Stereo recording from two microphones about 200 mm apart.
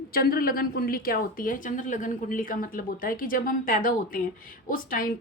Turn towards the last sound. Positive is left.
turn(degrees=45)  # may be behind; listen again after turning